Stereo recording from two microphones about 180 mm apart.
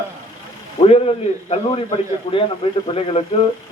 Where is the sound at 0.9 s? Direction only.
35° left (ahead or behind).